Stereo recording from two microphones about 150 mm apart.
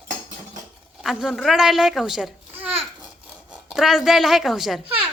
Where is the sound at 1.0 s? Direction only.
Centre (ahead or behind).